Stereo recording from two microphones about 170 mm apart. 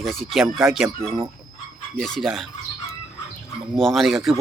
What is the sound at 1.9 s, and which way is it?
Speech, 5° left (ahead or behind).